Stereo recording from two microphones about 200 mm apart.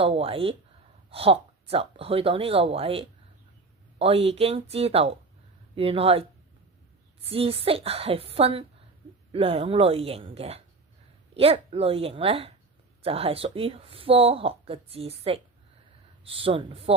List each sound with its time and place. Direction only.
0.0 s speech: 30° right (ahead or behind)